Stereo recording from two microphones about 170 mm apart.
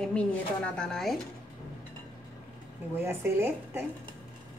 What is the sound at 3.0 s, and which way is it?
Speech, 15° right (ahead or behind).